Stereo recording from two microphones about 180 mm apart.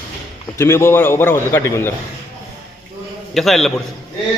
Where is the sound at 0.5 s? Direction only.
15° left (ahead or behind).